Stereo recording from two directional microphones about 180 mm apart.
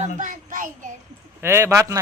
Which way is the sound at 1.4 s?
15° right (ahead or behind).